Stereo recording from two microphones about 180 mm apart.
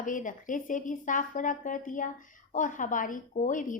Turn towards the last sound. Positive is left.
turn(degrees=45)  # may be behind; listen again after turning